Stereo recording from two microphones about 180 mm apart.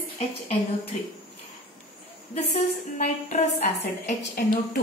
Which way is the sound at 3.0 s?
40° left (ahead or behind).